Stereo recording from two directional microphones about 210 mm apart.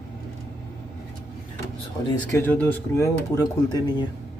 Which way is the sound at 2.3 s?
10° left (ahead or behind).